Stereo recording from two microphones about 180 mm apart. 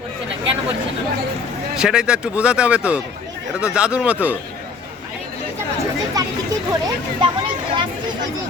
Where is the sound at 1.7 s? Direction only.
5° right (ahead or behind).